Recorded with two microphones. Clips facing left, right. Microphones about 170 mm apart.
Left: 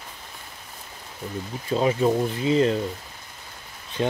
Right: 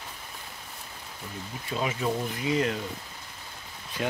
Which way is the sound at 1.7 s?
35° left (ahead or behind).